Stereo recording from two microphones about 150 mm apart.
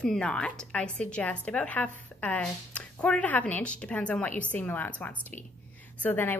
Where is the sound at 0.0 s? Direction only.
5° left (ahead or behind).